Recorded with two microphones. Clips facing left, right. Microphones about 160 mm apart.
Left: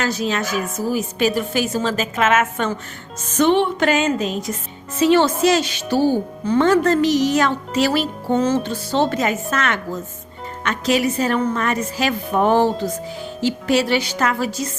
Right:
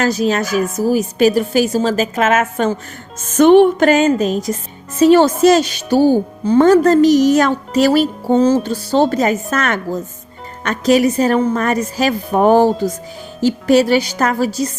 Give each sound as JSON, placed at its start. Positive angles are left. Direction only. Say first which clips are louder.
{"t": 0.0, "sound": "a woman's voice", "louder": "right 6 dB", "side_deg": -40}
{"t": 3.3, "sound": "music", "louder": "right 8 dB", "side_deg": -50}
{"t": 6.4, "sound": "a woman's voice", "louder": "right 6 dB", "side_deg": -35}